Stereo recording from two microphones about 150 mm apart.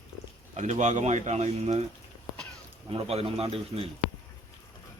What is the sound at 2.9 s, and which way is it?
Speech, 40° right (ahead or behind).